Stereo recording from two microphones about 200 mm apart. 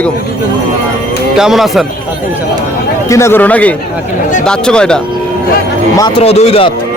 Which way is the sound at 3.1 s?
15° left (ahead or behind).